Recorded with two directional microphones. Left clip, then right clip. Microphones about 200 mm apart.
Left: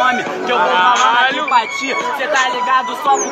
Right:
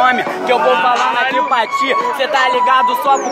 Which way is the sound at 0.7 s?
25° left (ahead or behind).